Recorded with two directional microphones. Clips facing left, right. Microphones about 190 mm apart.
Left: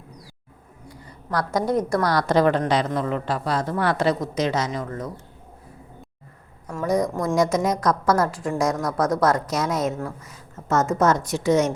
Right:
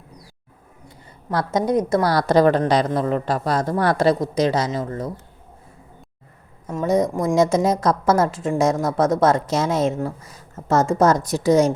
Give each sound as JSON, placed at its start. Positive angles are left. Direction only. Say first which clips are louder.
{"t": 0.9, "sound": "a woman's voice", "louder": "right 2 dB", "side_deg": -25}
{"t": 6.7, "sound": "a woman's voice", "louder": "right 3 dB", "side_deg": -20}
{"t": 7.3, "sound": "a woman's voice", "louder": "right 4 dB", "side_deg": -25}